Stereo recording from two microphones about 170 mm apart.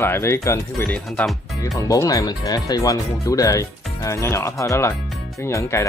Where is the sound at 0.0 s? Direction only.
15° left (ahead or behind).